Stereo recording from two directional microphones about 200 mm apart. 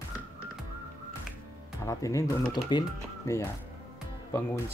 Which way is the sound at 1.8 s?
15° left (ahead or behind).